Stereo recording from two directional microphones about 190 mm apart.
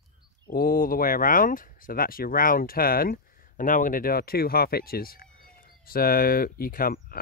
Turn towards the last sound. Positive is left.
turn(degrees=50)  # may be behind; listen again after turning